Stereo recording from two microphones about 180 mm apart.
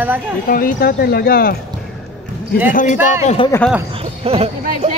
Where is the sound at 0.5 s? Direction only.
50° left (ahead or behind).